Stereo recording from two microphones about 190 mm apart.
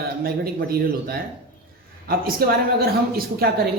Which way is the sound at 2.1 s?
50° right (ahead or behind).